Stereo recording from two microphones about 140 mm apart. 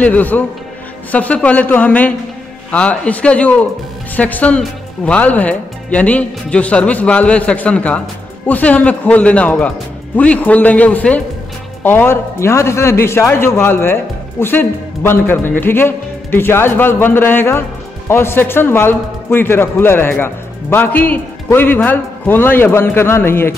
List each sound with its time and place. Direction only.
0.0 s a man's voice: 10° left (ahead or behind)